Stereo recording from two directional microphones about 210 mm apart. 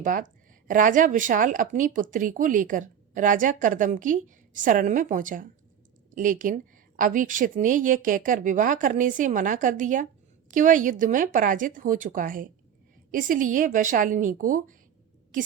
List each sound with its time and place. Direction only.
0.0 s speech: 40° right (ahead or behind)